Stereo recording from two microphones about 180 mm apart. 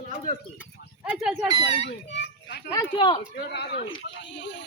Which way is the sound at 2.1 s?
70° left (ahead or behind).